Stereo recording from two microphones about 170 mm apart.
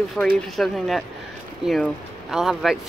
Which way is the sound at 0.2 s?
5° left (ahead or behind).